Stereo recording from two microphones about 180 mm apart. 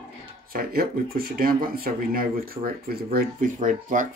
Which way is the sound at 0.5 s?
55° right (ahead or behind).